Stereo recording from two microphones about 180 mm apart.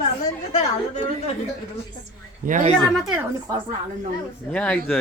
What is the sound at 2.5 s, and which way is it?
Speech, 45° right (ahead or behind).